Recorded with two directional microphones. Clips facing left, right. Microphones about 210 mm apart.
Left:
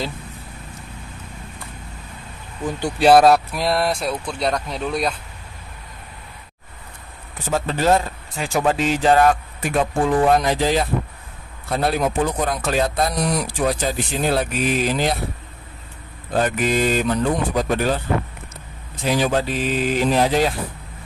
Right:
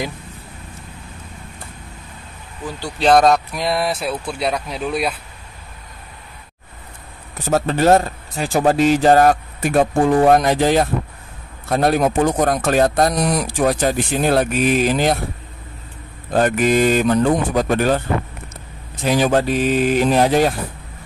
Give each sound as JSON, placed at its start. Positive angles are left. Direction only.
{"t": 3.0, "sound": "speech", "side_deg": 5}
{"t": 7.4, "sound": "speech", "side_deg": -45}
{"t": 10.0, "sound": "speech", "side_deg": -55}
{"t": 16.3, "sound": "speech", "side_deg": -50}
{"t": 19.0, "sound": "speech", "side_deg": -50}